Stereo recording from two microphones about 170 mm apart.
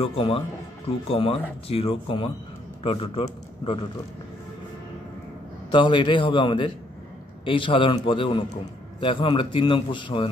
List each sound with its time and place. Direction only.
0.0 s a man's voice: 35° left (ahead or behind)
5.7 s a man's voice: 30° left (ahead or behind)